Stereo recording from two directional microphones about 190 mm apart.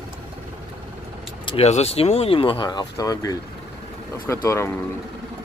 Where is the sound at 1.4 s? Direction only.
35° left (ahead or behind).